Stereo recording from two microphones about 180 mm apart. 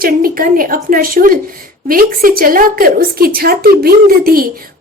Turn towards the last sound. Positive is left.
turn(degrees=-55)  # may be behind; listen again after turning